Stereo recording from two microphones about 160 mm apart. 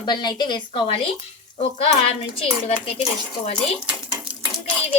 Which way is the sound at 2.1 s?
35° left (ahead or behind).